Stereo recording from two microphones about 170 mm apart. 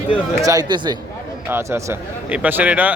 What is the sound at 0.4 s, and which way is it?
Speech, 20° right (ahead or behind).